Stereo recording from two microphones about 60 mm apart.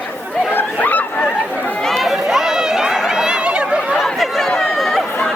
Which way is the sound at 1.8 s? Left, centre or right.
Centre.